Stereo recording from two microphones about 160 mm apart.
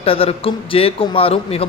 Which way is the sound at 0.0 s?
35° left (ahead or behind).